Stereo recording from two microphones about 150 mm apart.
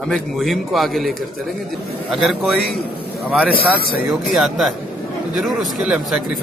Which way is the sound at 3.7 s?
85° left.